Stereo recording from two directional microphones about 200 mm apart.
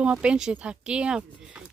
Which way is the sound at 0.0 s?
5° right (ahead or behind).